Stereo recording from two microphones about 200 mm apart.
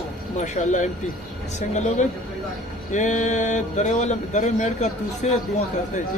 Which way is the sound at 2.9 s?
40° left (ahead or behind).